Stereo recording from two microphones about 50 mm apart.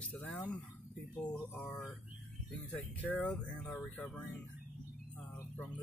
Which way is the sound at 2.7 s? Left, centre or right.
Left.